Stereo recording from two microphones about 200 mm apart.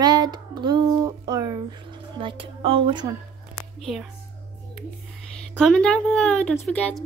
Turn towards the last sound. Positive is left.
turn(degrees=5)  # may be behind; listen again after turning